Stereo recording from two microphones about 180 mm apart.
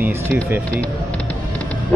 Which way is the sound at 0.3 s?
10° right (ahead or behind).